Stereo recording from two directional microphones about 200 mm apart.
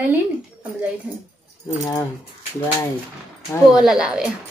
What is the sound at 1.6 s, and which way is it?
Speech, 15° left (ahead or behind).